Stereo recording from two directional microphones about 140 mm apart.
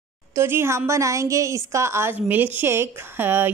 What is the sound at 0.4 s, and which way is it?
A woman's voice, 15° right (ahead or behind).